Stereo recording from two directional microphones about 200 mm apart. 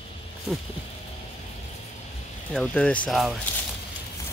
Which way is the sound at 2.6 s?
5° left (ahead or behind).